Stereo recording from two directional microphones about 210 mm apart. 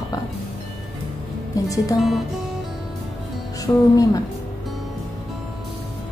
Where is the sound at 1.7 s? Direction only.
15° left (ahead or behind).